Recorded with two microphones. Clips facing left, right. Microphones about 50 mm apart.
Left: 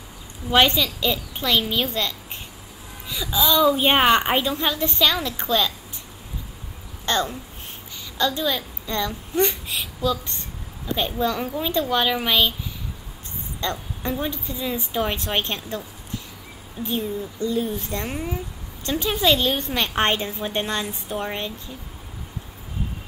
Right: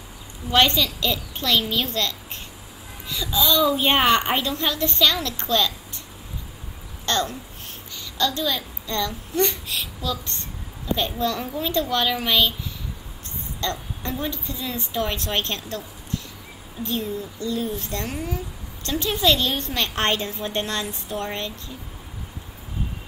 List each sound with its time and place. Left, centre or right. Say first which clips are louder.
0.5 s a woman's voice: left 1 dB; centre
7.1 s babbling: left 1 dB; centre
8.2 s a child's voice: left 1 dB; centre
13.6 s a woman's voice: left 1 dB; centre
16.8 s a woman's voice: left 1 dB; centre
18.0 s a woman's voice: left 1 dB; left